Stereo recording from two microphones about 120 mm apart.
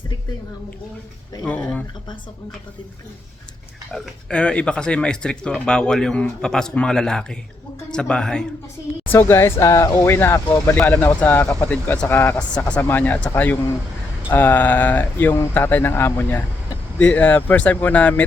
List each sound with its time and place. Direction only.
3.9 s a man's voice: 10° left (ahead or behind)
9.1 s speech: 25° left (ahead or behind)